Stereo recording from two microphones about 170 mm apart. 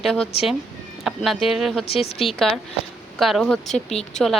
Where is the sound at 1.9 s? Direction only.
35° left (ahead or behind).